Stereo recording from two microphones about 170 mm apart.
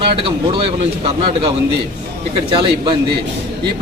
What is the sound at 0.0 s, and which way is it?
A man's voice, 30° right (ahead or behind).